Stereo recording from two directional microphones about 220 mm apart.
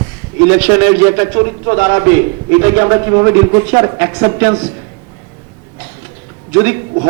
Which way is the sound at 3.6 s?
10° right (ahead or behind).